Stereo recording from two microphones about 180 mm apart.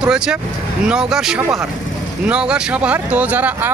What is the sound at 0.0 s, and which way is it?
Speech, 5° right (ahead or behind).